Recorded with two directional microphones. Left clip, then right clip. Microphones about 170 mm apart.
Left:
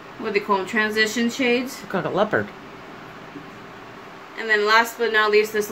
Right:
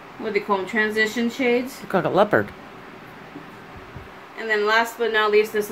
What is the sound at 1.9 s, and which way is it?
Speech, 25° right (ahead or behind).